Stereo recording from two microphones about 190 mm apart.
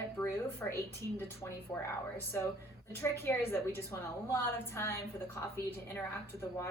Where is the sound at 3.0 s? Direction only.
10° left (ahead or behind).